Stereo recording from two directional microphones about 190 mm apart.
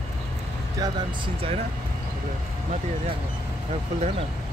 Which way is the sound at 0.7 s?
25° right (ahead or behind).